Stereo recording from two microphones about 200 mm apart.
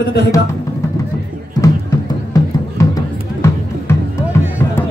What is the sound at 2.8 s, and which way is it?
Music, 15° left (ahead or behind).